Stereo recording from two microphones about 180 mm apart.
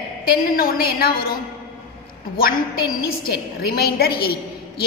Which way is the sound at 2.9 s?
60° left (ahead or behind).